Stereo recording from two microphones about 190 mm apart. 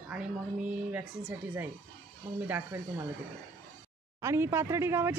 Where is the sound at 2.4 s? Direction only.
10° right (ahead or behind).